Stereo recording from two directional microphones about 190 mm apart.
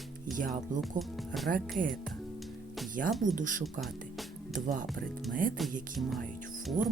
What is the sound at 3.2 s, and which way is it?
Speech, 45° right (ahead or behind).